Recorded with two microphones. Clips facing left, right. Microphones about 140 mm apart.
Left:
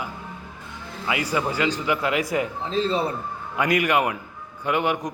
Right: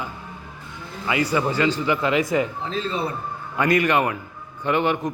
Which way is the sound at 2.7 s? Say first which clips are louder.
Left 3 dB; 35° left (ahead or behind).